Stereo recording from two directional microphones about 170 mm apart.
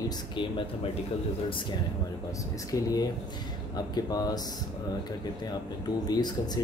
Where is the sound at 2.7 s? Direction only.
20° left (ahead or behind).